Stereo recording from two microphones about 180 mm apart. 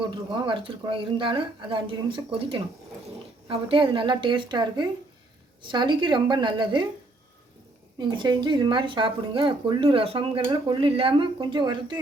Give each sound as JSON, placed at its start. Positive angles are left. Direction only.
{"t": 0.1, "sound": "speech", "side_deg": -25}
{"t": 7.9, "sound": "speech", "side_deg": -25}